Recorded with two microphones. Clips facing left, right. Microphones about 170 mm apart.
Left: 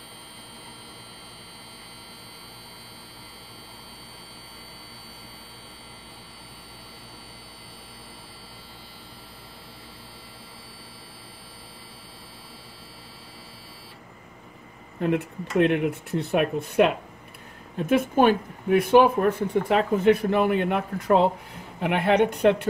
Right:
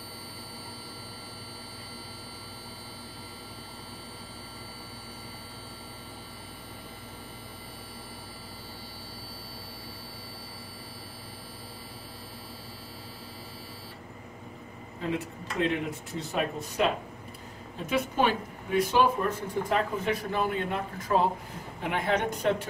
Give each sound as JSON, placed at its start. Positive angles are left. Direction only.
{"t": 15.0, "sound": "speech", "side_deg": 60}
{"t": 17.8, "sound": "speech", "side_deg": 50}